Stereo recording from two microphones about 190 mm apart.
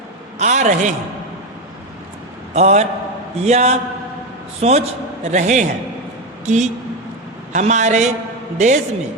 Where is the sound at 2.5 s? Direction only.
35° right (ahead or behind).